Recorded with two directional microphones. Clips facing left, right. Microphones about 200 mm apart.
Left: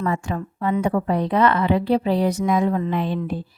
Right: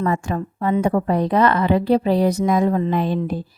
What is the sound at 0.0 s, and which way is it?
A woman's voice, 40° right (ahead or behind).